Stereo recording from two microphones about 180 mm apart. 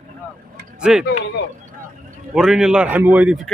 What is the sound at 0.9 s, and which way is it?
Speech, 5° right (ahead or behind).